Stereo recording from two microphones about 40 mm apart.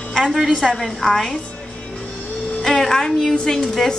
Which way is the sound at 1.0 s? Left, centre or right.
Centre.